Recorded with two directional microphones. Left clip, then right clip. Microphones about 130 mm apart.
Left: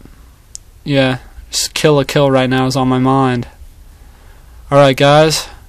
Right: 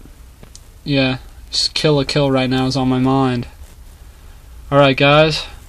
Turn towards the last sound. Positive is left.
turn(degrees=25)  # may be behind; listen again after turning